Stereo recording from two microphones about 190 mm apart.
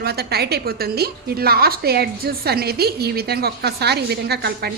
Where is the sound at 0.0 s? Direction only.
55° right (ahead or behind).